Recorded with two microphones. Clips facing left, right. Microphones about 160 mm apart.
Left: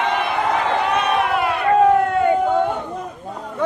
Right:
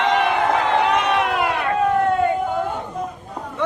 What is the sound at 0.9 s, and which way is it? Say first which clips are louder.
Crowd: even; 80° right.